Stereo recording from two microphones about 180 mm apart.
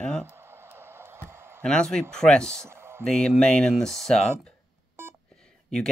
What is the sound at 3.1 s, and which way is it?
Speech, 5° left (ahead or behind).